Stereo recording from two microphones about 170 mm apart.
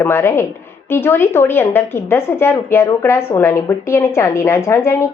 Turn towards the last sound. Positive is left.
turn(degrees=15)  # may be behind; listen again after turning